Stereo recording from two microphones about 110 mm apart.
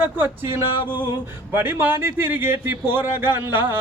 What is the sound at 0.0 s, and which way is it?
A man's voice, 20° right (ahead or behind).